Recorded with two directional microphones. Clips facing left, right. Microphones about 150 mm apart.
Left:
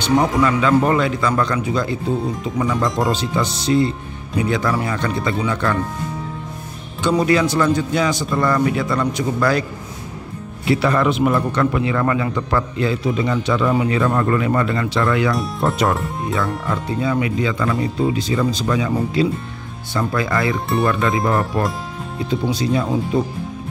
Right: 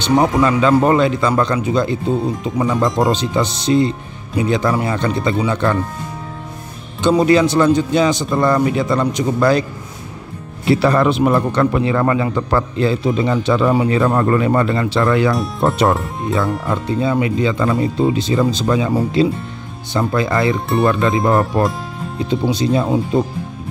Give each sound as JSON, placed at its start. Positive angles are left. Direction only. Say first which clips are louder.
{"t": 0.0, "sound": "speech", "louder": "right 2 dB", "side_deg": -25}
{"t": 7.0, "sound": "speech", "louder": "right 4 dB", "side_deg": -25}
{"t": 10.7, "sound": "a man's voice", "louder": "right 3 dB", "side_deg": -35}
{"t": 20.5, "sound": "speech", "louder": "right 2 dB", "side_deg": 0}
{"t": 20.8, "sound": "speech", "louder": "right 4 dB", "side_deg": -25}